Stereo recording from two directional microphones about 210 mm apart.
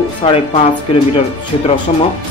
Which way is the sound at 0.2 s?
25° left (ahead or behind).